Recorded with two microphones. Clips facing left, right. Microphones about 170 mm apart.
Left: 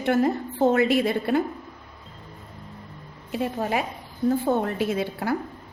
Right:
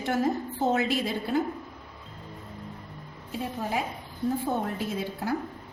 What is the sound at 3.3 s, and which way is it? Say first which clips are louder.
A woman's voice: left 5 dB; 70° left (ahead or behind).